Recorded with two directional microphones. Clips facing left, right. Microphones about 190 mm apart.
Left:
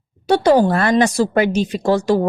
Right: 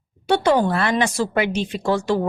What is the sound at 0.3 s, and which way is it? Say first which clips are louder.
A woman's voice: left 4 dB; 35° left (ahead or behind).